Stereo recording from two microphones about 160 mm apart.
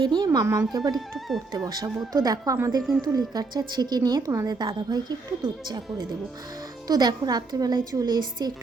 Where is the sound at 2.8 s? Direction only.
Centre (ahead or behind).